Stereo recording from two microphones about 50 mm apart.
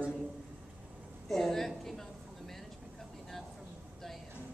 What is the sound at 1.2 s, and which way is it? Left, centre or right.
Speech, centre.